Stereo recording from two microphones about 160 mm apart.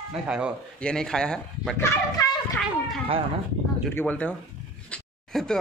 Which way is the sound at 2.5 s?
Centre (ahead or behind).